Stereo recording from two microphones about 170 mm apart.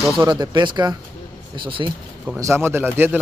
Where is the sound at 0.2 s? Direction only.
20° right (ahead or behind).